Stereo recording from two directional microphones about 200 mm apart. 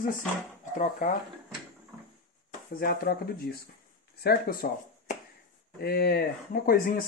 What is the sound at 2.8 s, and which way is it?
Speech, 50° left (ahead or behind).